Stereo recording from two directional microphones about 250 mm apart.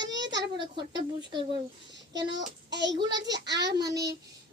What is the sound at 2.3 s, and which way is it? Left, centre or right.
A child's voice, right.